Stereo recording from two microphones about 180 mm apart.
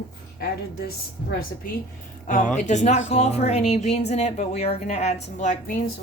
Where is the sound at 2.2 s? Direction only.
45° left (ahead or behind).